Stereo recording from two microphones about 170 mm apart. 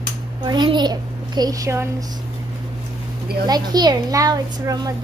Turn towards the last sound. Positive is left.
turn(degrees=-20)  # may be behind; listen again after turning